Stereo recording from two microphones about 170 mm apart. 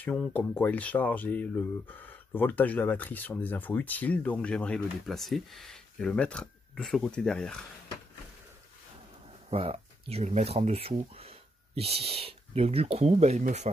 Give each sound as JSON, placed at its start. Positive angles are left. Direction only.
{"t": 0.0, "sound": "speech", "side_deg": 5}
{"t": 9.5, "sound": "speech", "side_deg": -35}